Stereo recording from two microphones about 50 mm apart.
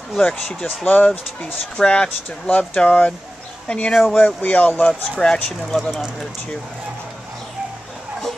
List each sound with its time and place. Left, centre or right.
0.2 s speech: centre
3.9 s speech: centre
4.4 s speech: left
5.2 s speech: centre
5.8 s speech: centre